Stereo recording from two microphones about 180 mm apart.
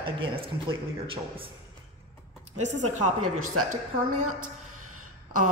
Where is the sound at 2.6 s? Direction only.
40° right (ahead or behind).